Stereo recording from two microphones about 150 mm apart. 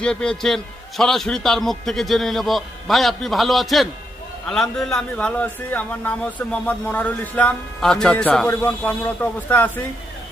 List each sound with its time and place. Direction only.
0.0 s a man's voice: 5° left (ahead or behind)